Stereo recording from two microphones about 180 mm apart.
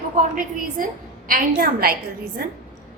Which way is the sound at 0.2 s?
50° right (ahead or behind).